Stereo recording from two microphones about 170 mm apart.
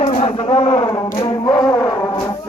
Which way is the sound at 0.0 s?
35° left (ahead or behind).